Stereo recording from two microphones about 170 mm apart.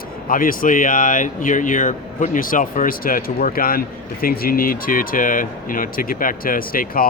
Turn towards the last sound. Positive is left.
turn(degrees=55)  # may be behind; listen again after turning